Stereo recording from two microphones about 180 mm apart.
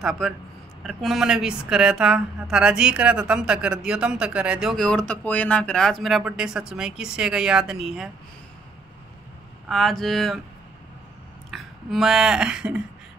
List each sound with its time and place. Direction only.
0.0 s speech: centre (ahead or behind)
9.7 s speech: centre (ahead or behind)
11.5 s a sound: centre (ahead or behind)